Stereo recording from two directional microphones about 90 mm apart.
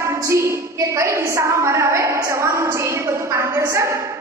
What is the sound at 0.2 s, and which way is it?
A woman's voice, 30° right (ahead or behind).